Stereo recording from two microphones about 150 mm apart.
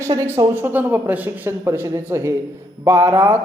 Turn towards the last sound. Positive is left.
turn(degrees=-15)  # may be behind; listen again after turning